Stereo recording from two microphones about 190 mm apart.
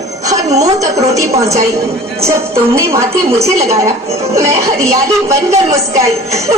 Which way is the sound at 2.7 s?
15° right (ahead or behind).